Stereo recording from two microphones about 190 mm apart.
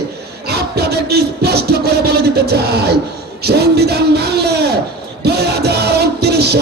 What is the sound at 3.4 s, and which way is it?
Music, 60° right (ahead or behind).